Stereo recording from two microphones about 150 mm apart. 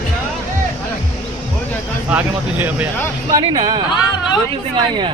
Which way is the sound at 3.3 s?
30° right (ahead or behind).